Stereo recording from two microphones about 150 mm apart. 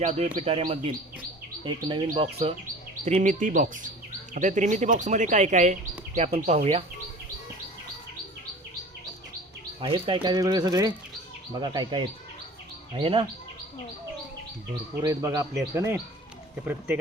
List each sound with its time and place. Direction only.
0.0 s speech: 50° right (ahead or behind); by 2.2 s 35° right (ahead or behind)
3.0 s speech: 55° right (ahead or behind)
9.8 s speech: 35° right (ahead or behind)
15.0 s speech: 20° right (ahead or behind)